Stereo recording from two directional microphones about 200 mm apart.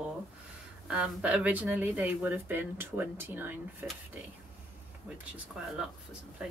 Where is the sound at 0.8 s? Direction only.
5° right (ahead or behind).